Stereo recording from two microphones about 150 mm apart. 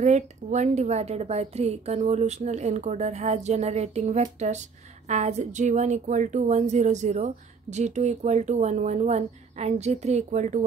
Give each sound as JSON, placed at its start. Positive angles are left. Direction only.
{"t": 0.0, "sound": "a woman's voice", "side_deg": -50}